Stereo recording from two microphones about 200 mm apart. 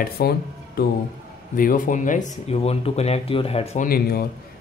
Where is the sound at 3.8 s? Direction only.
50° left (ahead or behind).